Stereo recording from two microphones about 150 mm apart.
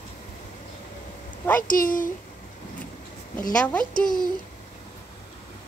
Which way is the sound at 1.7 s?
65° left (ahead or behind).